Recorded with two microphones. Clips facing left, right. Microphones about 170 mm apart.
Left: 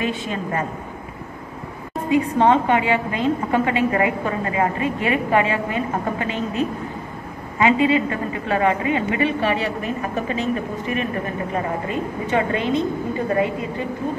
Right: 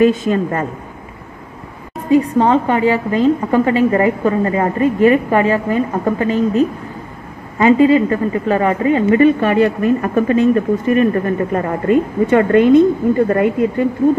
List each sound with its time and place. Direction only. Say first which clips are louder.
0.0 s a man's voice: right 12 dB; 45° right (ahead or behind)
2.0 s a woman's voice: right 4 dB; 35° right (ahead or behind); by 13.8 s 55° right (ahead or behind)